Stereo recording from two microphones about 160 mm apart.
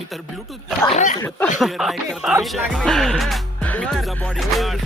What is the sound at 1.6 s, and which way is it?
Music, centre (ahead or behind).